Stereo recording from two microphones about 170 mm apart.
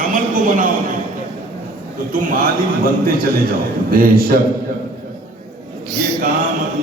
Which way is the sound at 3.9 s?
60° right (ahead or behind).